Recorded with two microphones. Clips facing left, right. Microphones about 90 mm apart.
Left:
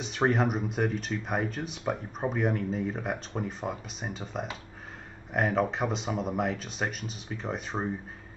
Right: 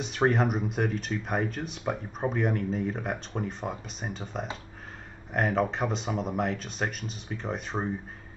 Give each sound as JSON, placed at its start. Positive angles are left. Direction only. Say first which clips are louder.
{"t": 0.0, "sound": "speech", "louder": "right 1 dB", "side_deg": 0}